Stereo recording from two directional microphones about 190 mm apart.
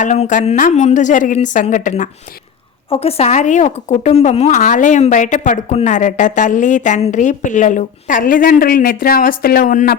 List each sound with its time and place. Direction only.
0.0 s speech: 40° left (ahead or behind)
2.9 s speech: 30° left (ahead or behind); by 10.0 s 50° left (ahead or behind)